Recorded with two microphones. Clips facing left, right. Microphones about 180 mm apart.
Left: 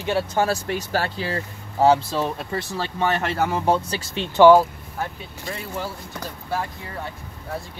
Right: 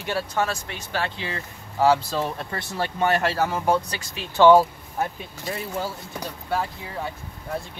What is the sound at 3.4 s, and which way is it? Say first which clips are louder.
Speech: left 1 dB; 25° left (ahead or behind).